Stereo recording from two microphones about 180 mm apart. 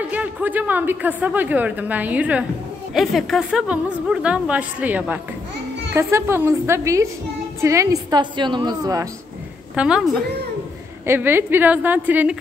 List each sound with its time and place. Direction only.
0.1 s a woman's voice: 10° right (ahead or behind)
9.8 s a woman's voice: 5° right (ahead or behind)
11.1 s a woman's voice: 10° right (ahead or behind)